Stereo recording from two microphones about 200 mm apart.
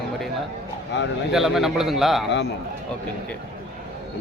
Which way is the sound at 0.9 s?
60° left (ahead or behind).